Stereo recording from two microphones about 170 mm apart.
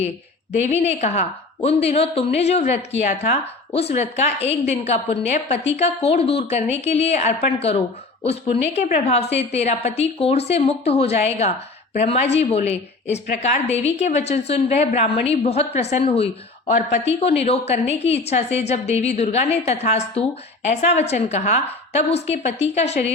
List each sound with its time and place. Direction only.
0.7 s a woman's voice: 40° left (ahead or behind)